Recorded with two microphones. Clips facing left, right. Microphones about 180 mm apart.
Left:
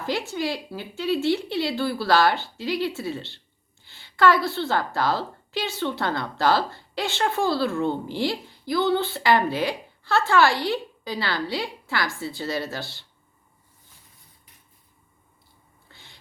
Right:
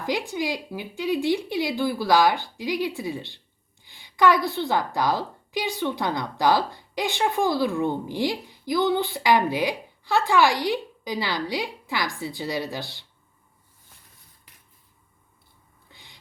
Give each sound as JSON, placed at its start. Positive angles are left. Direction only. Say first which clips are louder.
{"t": 0.0, "sound": "a woman's voice", "louder": "even", "side_deg": -15}
{"t": 15.9, "sound": "cat", "louder": "even", "side_deg": -15}